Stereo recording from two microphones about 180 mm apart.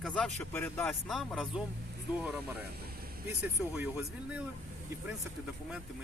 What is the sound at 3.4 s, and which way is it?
Speech, 10° right (ahead or behind).